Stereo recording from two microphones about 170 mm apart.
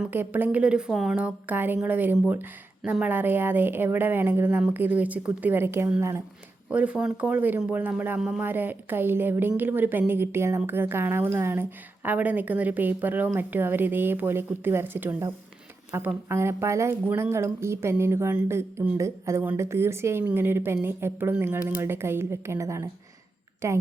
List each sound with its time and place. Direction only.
0.0 s a woman's voice: 10° right (ahead or behind)